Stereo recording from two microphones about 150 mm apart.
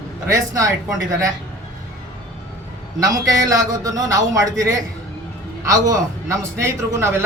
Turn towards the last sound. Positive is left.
turn(degrees=-15)  # may be behind; listen again after turning